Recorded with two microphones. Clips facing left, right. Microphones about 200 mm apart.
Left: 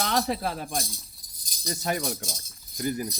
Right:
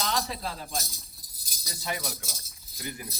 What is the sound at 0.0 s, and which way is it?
Speech, 55° left (ahead or behind).